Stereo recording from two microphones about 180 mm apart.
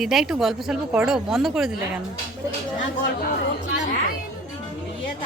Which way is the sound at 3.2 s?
50° left (ahead or behind).